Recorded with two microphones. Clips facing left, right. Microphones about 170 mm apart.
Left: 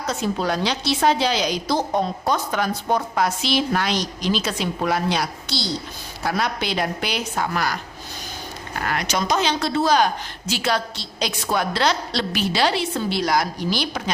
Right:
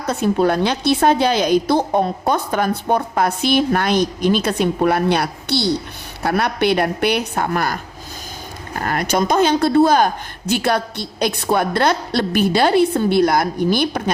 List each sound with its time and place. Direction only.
0.0 s a woman's voice: 55° right (ahead or behind)